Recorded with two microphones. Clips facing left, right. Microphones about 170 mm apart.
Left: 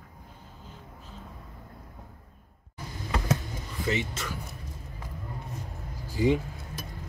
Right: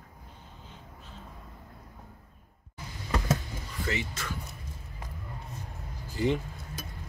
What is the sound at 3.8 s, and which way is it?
Speech, 20° left (ahead or behind).